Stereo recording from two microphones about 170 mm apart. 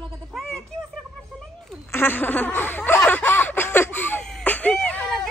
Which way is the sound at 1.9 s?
15° left (ahead or behind).